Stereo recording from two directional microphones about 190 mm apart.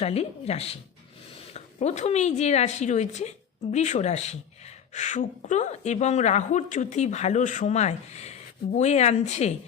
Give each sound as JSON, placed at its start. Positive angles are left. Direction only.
{"t": 0.0, "sound": "a woman's voice", "side_deg": 35}